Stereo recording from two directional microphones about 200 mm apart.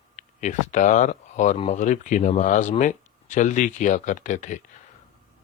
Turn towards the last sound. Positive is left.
turn(degrees=40)  # may be behind; listen again after turning